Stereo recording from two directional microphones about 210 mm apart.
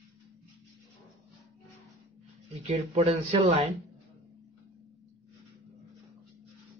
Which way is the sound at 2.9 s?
30° right (ahead or behind).